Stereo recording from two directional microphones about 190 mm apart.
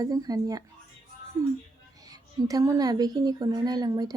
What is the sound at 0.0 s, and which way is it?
Speech, 20° right (ahead or behind).